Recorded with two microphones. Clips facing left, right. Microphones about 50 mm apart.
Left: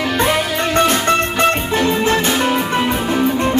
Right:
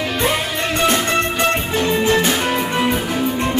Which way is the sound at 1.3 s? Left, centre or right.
Left.